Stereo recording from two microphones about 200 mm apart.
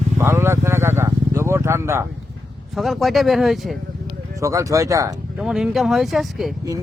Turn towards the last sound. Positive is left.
turn(degrees=0)  # may be behind; listen again after turning